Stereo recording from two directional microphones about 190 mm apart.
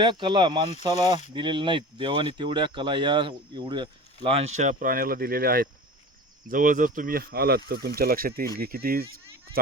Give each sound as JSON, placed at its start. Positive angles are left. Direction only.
{"t": 0.0, "sound": "speech", "side_deg": -25}
{"t": 1.0, "sound": "speech", "side_deg": 35}
{"t": 1.3, "sound": "speech", "side_deg": -25}